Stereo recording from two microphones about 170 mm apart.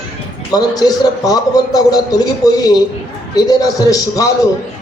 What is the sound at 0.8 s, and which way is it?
A man's voice, 20° left (ahead or behind).